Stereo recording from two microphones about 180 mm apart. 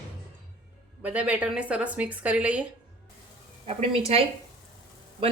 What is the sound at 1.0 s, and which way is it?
Speech, 10° right (ahead or behind).